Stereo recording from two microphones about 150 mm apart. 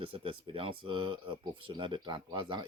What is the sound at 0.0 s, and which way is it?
Speech, 35° right (ahead or behind).